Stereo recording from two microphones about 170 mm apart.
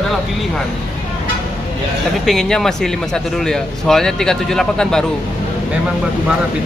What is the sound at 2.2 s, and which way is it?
Speech, centre (ahead or behind).